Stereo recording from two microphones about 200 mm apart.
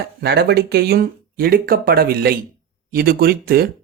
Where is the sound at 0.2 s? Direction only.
55° right (ahead or behind).